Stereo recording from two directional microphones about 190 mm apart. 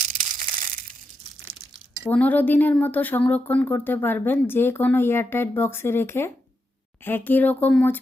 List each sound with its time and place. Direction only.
0.1 s crushing: 45° right (ahead or behind)
2.0 s speech: 10° left (ahead or behind)